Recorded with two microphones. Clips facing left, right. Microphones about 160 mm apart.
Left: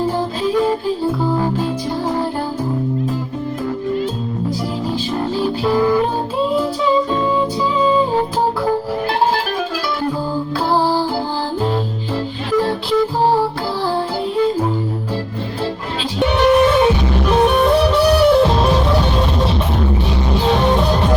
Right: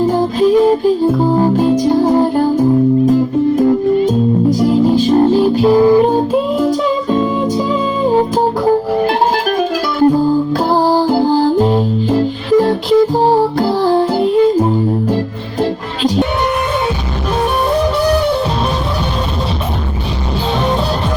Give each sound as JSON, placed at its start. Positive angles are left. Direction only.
{"t": 2.0, "sound": "music", "side_deg": -45}
{"t": 5.0, "sound": "music", "side_deg": -45}
{"t": 5.6, "sound": "music", "side_deg": -20}
{"t": 10.8, "sound": "music", "side_deg": -45}
{"t": 11.6, "sound": "music", "side_deg": -15}